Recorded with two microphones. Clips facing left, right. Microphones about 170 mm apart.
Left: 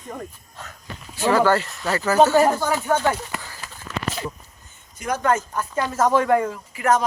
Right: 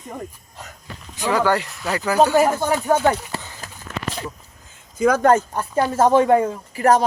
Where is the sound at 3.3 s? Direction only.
30° right (ahead or behind).